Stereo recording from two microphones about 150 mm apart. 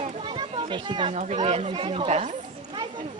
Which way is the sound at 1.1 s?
50° right (ahead or behind).